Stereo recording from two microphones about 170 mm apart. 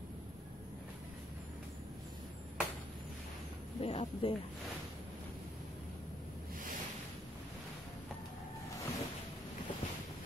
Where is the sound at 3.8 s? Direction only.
35° left (ahead or behind).